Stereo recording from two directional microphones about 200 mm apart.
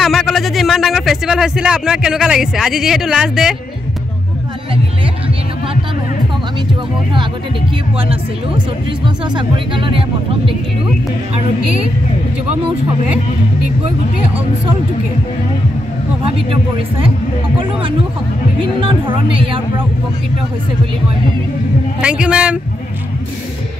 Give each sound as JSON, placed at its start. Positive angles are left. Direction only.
{"t": 0.0, "sound": "speech", "side_deg": 0}
{"t": 8.1, "sound": "speech", "side_deg": -25}
{"t": 16.3, "sound": "speech", "side_deg": -25}
{"t": 18.8, "sound": "speech", "side_deg": -25}
{"t": 22.0, "sound": "speech", "side_deg": -5}